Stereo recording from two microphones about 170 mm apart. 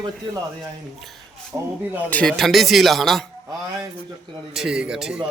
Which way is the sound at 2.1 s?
5° left (ahead or behind).